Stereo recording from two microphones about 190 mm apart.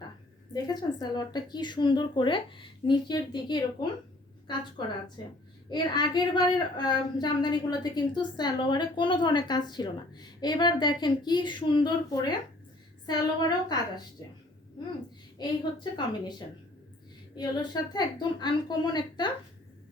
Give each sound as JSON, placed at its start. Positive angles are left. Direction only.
{"t": 0.5, "sound": "a woman's voice", "side_deg": 20}
{"t": 5.7, "sound": "a woman's voice", "side_deg": 20}
{"t": 15.4, "sound": "a woman's voice", "side_deg": 25}
{"t": 17.3, "sound": "a woman's voice", "side_deg": 20}